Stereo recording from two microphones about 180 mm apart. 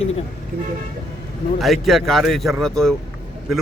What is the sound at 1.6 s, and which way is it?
Speech, centre (ahead or behind).